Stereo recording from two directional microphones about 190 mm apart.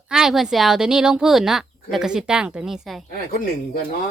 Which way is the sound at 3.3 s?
50° left (ahead or behind).